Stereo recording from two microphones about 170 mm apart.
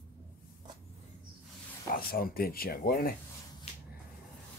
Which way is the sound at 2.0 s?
60° left (ahead or behind).